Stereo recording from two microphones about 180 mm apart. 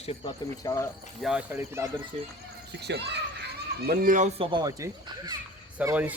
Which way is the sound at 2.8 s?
70° right (ahead or behind).